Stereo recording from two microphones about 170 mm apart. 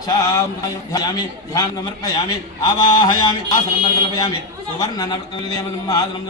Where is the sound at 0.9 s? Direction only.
20° left (ahead or behind).